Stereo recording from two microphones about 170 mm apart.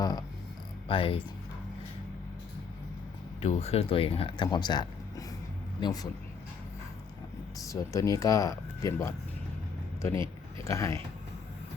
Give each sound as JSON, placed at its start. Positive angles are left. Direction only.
{"t": 0.0, "sound": "speech", "side_deg": 25}
{"t": 3.4, "sound": "speech", "side_deg": 35}
{"t": 7.6, "sound": "speech", "side_deg": 20}
{"t": 10.6, "sound": "speech", "side_deg": 15}